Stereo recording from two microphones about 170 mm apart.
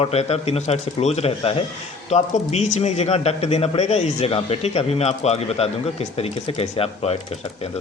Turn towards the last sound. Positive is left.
turn(degrees=35)  # may be behind; listen again after turning